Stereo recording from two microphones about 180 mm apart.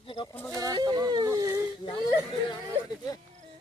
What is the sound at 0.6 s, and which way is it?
Whimper, 20° right (ahead or behind).